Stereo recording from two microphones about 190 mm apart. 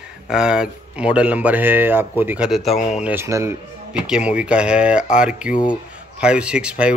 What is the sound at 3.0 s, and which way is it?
Speech, 10° right (ahead or behind).